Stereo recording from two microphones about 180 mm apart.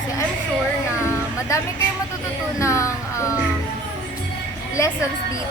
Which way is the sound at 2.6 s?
15° left (ahead or behind).